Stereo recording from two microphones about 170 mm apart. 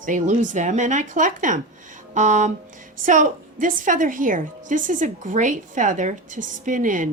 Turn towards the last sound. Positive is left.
turn(degrees=-50)  # may be behind; listen again after turning